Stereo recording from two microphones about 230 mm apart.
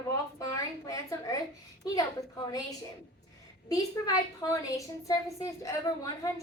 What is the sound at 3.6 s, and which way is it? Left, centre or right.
A woman's voice, centre.